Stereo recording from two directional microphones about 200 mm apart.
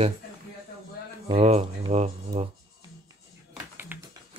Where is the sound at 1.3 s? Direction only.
30° right (ahead or behind).